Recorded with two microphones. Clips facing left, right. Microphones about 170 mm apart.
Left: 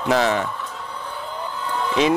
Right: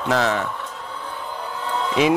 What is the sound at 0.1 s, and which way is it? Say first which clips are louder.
Speech: left 2 dB; centre (ahead or behind).